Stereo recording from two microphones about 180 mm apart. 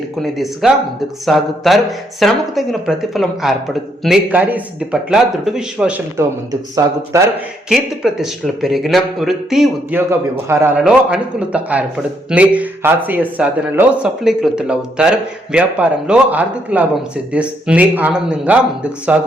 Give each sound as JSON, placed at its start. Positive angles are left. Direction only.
{"t": 0.2, "sound": "speech", "side_deg": 0}
{"t": 6.1, "sound": "speech", "side_deg": -15}
{"t": 7.7, "sound": "speech", "side_deg": 0}
{"t": 10.1, "sound": "speech", "side_deg": -15}